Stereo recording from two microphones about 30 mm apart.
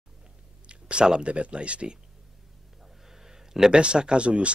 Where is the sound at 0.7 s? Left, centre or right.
Right.